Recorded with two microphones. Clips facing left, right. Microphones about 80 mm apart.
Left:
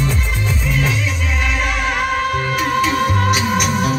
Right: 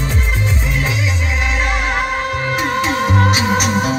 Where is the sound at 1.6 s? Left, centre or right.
Right.